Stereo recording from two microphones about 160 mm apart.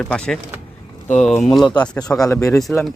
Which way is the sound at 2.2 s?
20° left (ahead or behind).